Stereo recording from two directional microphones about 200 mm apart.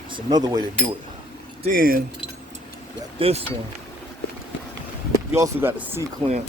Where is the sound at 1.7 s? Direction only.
45° right (ahead or behind).